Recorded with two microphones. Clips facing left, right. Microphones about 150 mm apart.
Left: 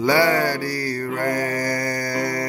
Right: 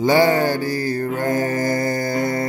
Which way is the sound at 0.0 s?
20° right (ahead or behind).